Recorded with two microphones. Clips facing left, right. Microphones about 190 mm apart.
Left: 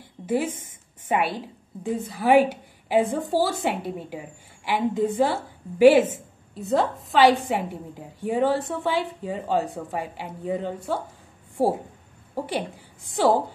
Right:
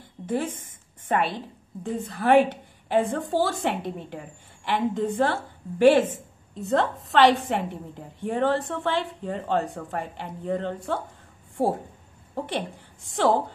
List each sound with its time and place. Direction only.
1.0 s a woman's voice: 5° left (ahead or behind)